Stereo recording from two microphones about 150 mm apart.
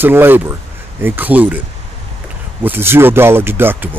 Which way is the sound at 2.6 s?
15° right (ahead or behind).